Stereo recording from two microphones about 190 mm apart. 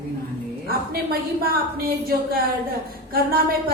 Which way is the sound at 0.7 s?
55° right (ahead or behind).